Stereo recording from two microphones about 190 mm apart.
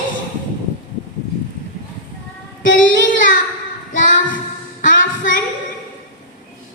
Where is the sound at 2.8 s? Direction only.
45° left (ahead or behind).